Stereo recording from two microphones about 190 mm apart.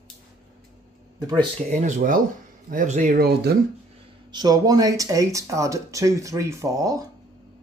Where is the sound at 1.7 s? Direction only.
40° right (ahead or behind).